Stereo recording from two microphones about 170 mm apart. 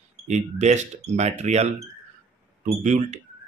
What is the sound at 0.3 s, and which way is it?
Speech, 40° right (ahead or behind).